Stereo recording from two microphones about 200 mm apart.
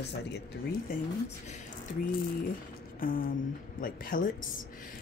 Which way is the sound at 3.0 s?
45° left (ahead or behind).